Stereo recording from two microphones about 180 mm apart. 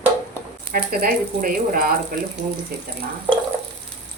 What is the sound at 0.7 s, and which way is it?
Speech, 55° right (ahead or behind).